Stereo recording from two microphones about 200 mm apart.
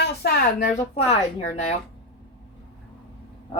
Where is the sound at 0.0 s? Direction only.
55° left (ahead or behind).